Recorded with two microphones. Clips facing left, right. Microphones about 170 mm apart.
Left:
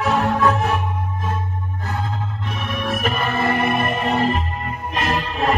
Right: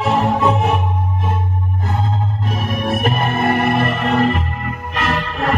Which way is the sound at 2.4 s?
40° right (ahead or behind).